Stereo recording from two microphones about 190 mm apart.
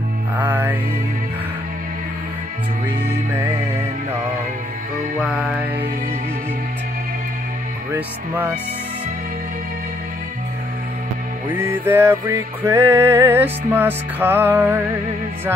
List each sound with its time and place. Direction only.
0.4 s music: 10° right (ahead or behind)
5.2 s music: 5° right (ahead or behind)
11.5 s music: 10° right (ahead or behind)